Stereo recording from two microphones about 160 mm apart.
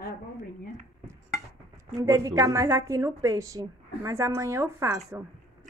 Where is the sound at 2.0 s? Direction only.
20° right (ahead or behind).